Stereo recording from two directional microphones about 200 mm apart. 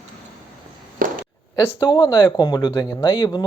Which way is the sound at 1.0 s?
45° right (ahead or behind).